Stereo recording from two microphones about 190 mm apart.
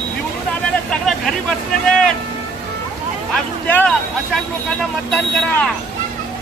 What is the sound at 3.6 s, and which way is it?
Speech, 10° left (ahead or behind).